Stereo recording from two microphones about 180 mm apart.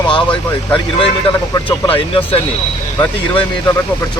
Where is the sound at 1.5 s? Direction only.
30° left (ahead or behind).